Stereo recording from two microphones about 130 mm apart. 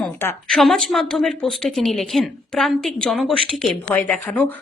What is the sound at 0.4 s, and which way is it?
A woman's voice, centre (ahead or behind).